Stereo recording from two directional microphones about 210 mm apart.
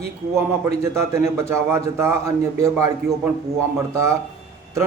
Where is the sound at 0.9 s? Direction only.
15° right (ahead or behind).